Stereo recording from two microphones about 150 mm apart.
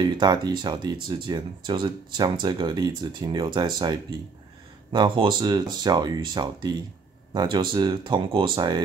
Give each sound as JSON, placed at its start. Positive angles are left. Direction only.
{"t": 0.0, "sound": "speech", "side_deg": -30}